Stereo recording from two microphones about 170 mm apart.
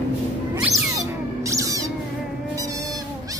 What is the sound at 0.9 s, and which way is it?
Music, 20° right (ahead or behind).